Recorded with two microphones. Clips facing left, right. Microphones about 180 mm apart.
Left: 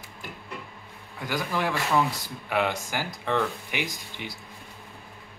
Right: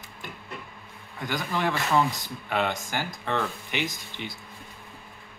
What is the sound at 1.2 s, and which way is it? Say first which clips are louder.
Speech: even; 5° left (ahead or behind).